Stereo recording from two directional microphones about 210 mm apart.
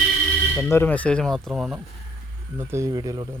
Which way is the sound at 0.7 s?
10° left (ahead or behind).